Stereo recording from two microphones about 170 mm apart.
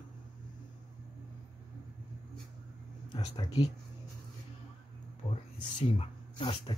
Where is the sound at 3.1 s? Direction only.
25° left (ahead or behind).